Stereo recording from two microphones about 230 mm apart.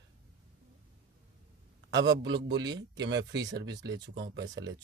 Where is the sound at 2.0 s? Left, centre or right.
Right.